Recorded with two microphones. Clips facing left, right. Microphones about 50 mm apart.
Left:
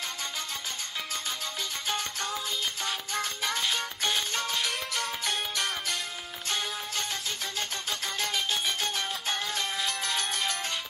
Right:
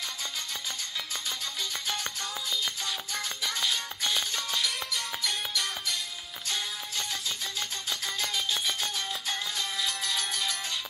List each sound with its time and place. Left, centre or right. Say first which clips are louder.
3.2 s music: left 3 dB; left